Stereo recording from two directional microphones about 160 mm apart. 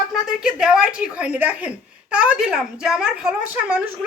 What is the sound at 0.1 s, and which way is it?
A woman's voice, 5° right (ahead or behind).